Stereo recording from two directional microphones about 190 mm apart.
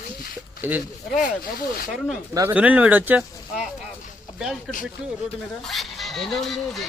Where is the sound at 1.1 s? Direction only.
45° left (ahead or behind).